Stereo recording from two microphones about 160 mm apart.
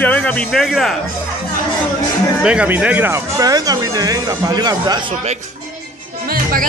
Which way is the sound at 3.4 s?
25° right (ahead or behind).